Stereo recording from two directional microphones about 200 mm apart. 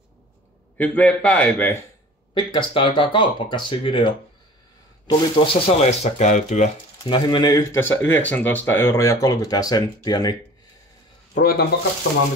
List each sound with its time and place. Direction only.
0.7 s speech: 5° left (ahead or behind)
2.3 s speech: 25° left (ahead or behind)
7.1 s speech: 20° left (ahead or behind)
11.3 s speech: 45° left (ahead or behind)